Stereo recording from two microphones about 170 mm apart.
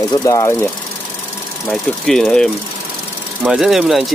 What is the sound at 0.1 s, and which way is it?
Speech, 20° left (ahead or behind).